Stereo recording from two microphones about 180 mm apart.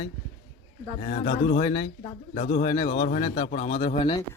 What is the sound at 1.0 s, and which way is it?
A man's voice, 40° left (ahead or behind).